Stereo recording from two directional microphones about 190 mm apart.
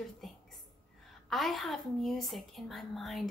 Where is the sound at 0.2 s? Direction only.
Centre (ahead or behind).